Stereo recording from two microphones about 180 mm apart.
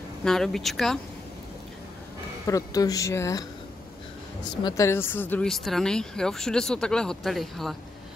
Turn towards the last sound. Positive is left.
turn(degrees=0)  # may be behind; listen again after turning